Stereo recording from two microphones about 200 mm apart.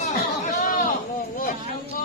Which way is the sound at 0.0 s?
40° left (ahead or behind).